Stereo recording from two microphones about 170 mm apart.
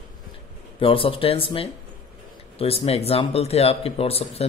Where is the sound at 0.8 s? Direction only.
35° left (ahead or behind).